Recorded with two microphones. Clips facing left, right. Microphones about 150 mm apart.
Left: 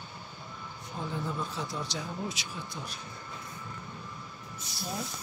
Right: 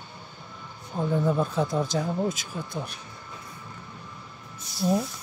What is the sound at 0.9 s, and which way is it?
Speech, 50° right (ahead or behind).